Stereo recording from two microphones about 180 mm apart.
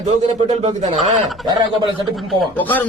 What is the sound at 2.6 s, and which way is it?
Speech, 10° left (ahead or behind).